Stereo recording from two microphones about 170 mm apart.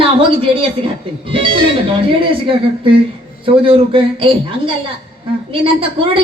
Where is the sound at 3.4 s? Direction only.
30° right (ahead or behind).